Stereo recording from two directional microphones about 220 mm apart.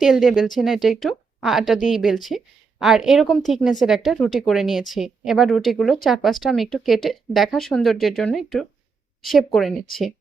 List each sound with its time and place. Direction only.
0.0 s a woman's voice: centre (ahead or behind)